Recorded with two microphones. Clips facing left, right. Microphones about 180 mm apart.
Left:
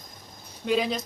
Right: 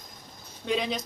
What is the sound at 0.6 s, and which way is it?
Speech, 5° left (ahead or behind).